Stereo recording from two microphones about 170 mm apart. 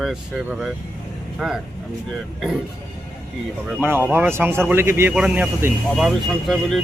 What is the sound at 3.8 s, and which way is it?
A man's voice, 10° right (ahead or behind).